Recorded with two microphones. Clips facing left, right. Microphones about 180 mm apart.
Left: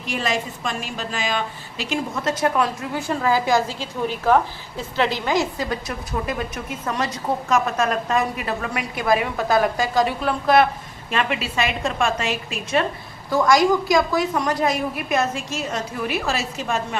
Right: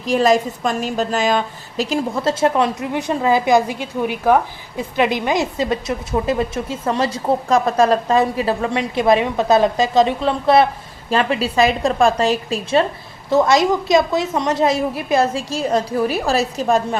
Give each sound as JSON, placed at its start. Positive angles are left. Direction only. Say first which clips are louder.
{"t": 0.0, "sound": "a woman's voice", "louder": "right 10 dB", "side_deg": -40}
{"t": 13.3, "sound": "a woman's voice", "louder": "right 2 dB", "side_deg": -25}